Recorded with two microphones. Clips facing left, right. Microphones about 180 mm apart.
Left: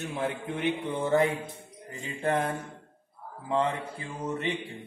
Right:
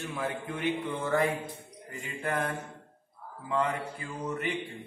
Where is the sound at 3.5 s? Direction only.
25° left (ahead or behind).